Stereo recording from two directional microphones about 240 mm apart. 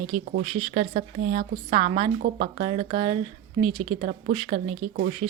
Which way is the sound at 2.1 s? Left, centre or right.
Right.